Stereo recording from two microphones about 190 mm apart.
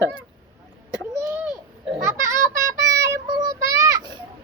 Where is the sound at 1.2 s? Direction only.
15° right (ahead or behind).